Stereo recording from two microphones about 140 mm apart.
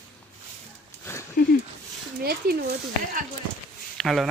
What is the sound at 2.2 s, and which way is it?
Speech, 90° right.